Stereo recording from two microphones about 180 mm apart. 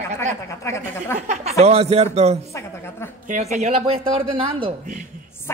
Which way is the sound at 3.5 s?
40° right (ahead or behind).